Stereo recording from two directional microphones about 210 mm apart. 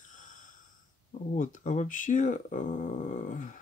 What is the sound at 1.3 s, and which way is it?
Speech, 35° left (ahead or behind).